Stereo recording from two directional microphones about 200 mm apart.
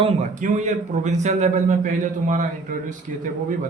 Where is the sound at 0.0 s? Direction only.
35° right (ahead or behind).